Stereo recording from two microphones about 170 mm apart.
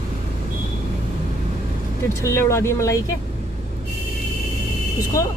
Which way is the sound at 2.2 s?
15° left (ahead or behind).